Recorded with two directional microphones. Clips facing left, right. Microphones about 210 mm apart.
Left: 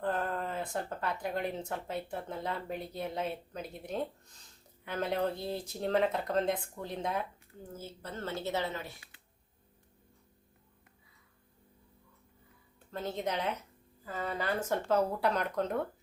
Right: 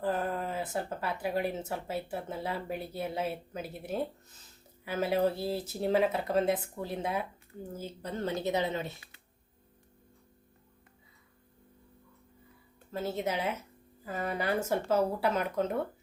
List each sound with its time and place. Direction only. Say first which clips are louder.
0.0 s speech: right 2 dB; 5° right (ahead or behind)
12.9 s speech: right 2 dB; 5° right (ahead or behind)